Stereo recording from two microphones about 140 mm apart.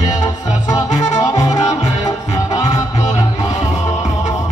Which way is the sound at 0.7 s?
25° left (ahead or behind).